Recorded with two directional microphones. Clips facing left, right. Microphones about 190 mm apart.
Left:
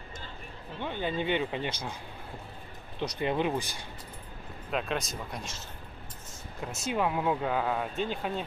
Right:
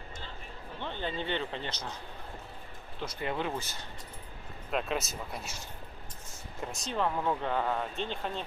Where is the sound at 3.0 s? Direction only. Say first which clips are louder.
Left 5 dB; 20° left (ahead or behind).